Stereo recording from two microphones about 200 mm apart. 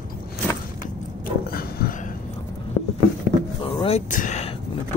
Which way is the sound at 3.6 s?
30° left (ahead or behind).